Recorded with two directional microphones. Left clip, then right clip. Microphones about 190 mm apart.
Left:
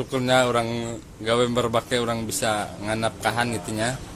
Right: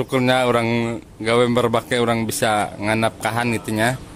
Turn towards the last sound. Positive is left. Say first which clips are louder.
# right 6 dB
turn(degrees=-40)  # may be behind; listen again after turning